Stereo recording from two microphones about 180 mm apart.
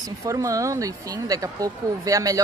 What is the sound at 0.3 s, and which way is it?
Speech, 20° right (ahead or behind).